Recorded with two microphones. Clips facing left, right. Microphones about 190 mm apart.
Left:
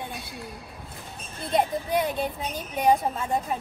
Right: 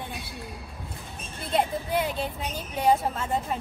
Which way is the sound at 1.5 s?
15° left (ahead or behind).